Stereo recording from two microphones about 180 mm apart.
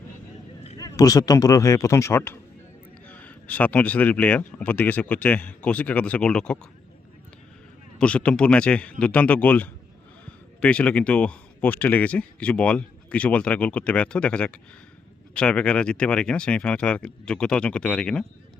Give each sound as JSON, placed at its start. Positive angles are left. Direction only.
{"t": 0.8, "sound": "speech", "side_deg": 20}
{"t": 7.9, "sound": "speech", "side_deg": 5}